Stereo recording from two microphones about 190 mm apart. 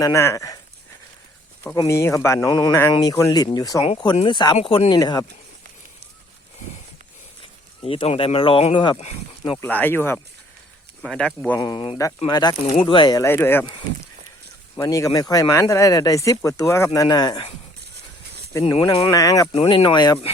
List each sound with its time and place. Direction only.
0.0 s speech: 15° left (ahead or behind)
1.9 s speech: 15° left (ahead or behind)
7.9 s speech: 30° left (ahead or behind)
9.4 s speech: 10° left (ahead or behind)
11.6 s speech: 25° left (ahead or behind)
14.8 s speech: 15° left (ahead or behind)
18.7 s speech: 25° left (ahead or behind)
19.5 s speech: 30° left (ahead or behind)